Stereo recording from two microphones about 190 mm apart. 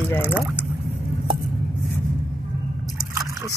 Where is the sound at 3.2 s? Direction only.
20° right (ahead or behind).